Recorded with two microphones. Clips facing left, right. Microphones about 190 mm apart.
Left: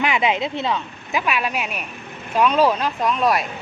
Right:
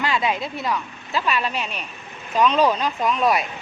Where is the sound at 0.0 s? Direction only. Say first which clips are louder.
Left 3 dB; 20° left (ahead or behind).